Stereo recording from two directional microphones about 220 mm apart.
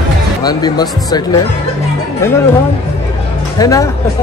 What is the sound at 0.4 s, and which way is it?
Speech, 20° left (ahead or behind).